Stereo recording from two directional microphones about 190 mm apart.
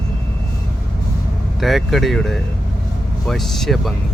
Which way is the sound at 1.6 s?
Centre (ahead or behind).